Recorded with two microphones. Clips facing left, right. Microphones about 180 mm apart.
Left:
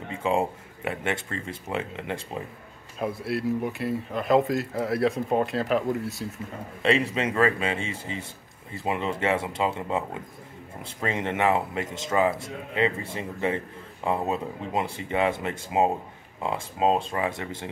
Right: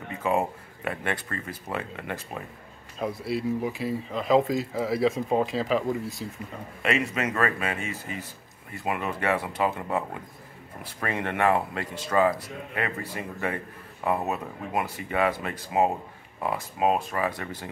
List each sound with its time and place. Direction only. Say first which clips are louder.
0.1 s speech: left 1 dB; 25° left (ahead or behind)
3.0 s speech: left 1 dB; centre (ahead or behind)
6.8 s speech: left 3 dB; 30° left (ahead or behind)